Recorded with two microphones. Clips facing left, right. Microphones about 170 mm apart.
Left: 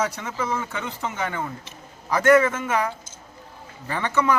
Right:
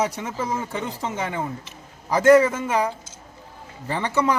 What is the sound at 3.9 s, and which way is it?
Speech, 35° right (ahead or behind).